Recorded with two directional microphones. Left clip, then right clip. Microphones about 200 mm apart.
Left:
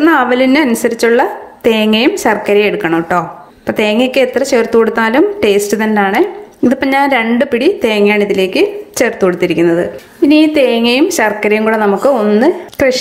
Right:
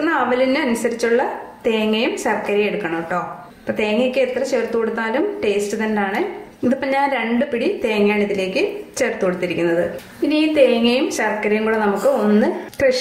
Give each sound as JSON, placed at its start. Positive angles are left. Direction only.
{"t": 0.0, "sound": "a woman's voice", "side_deg": 45}